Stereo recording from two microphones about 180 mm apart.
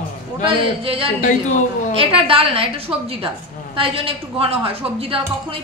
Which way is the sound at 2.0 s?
30° right (ahead or behind).